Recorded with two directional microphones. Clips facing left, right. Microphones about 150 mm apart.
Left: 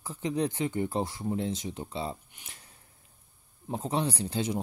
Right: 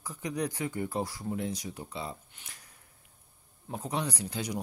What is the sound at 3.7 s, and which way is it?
Speech, 25° left (ahead or behind).